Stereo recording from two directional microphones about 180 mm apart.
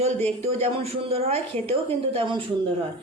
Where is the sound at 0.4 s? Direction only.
35° right (ahead or behind).